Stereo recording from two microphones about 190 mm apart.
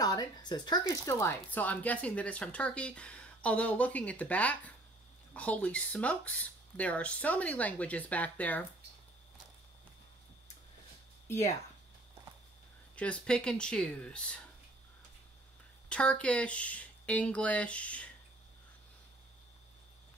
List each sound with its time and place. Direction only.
0.0 s speech: 20° left (ahead or behind)
12.9 s speech: 5° left (ahead or behind)
15.9 s speech: 5° left (ahead or behind)